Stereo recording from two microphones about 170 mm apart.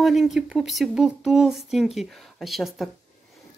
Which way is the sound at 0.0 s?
Centre (ahead or behind).